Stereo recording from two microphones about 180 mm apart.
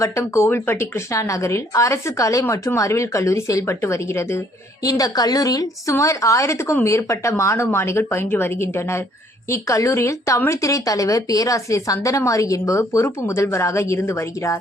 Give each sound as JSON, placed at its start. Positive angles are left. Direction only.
{"t": 0.0, "sound": "speech", "side_deg": 15}